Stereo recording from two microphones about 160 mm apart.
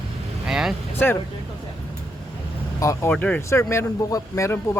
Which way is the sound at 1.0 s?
10° left (ahead or behind).